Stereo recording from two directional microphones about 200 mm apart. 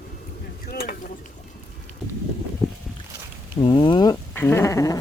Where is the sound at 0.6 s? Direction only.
50° left (ahead or behind).